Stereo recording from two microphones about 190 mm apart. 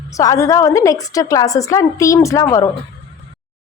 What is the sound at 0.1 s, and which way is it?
A woman's voice, 15° left (ahead or behind).